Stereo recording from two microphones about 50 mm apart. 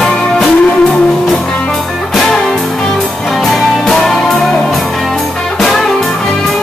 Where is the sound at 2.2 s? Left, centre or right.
Centre.